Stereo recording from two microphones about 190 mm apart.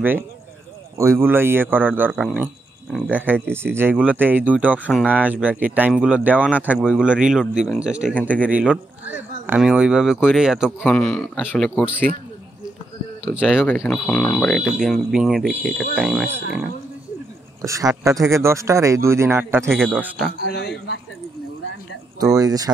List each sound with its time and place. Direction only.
0.9 s speech: 15° right (ahead or behind)
13.2 s speech: 5° right (ahead or behind)
13.7 s speech: 5° left (ahead or behind)
17.6 s speech: 15° right (ahead or behind)
20.4 s a man's voice: 60° left (ahead or behind)
22.2 s speech: 20° right (ahead or behind)